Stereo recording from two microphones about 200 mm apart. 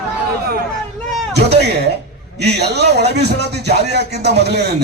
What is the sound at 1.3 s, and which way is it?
A man's voice, 55° right (ahead or behind).